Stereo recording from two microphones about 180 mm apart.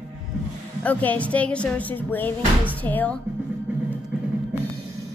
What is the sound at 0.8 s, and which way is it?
A woman's voice, 10° left (ahead or behind).